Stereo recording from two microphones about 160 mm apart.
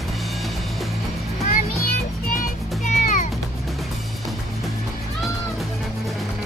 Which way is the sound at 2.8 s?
50° left (ahead or behind).